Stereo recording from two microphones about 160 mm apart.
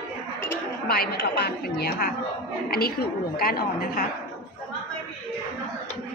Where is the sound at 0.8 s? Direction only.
75° left (ahead or behind).